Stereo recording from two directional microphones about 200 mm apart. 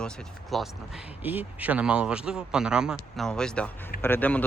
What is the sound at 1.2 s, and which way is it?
Speech, 10° right (ahead or behind).